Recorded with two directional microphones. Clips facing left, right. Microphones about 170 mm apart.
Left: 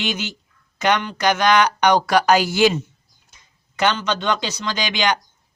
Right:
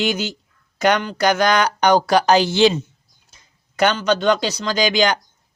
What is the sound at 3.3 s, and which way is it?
A man's voice, 40° right (ahead or behind).